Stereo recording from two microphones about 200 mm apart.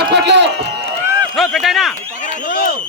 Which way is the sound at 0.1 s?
60° right (ahead or behind).